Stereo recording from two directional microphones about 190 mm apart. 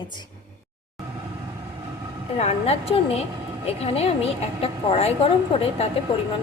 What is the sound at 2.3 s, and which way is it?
A woman's voice, 35° left (ahead or behind).